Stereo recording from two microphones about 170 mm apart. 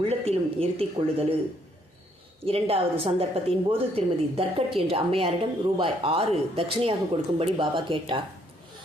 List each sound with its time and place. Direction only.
0.0 s a woman's voice: 35° right (ahead or behind)
2.4 s a woman's voice: 35° right (ahead or behind)